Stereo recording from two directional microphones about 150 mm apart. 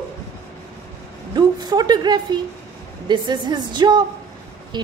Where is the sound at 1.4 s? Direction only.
25° right (ahead or behind).